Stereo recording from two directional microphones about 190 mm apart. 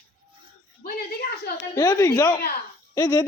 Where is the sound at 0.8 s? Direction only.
55° left (ahead or behind).